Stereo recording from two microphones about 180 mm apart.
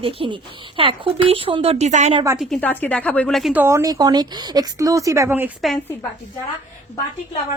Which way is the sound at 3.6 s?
15° right (ahead or behind).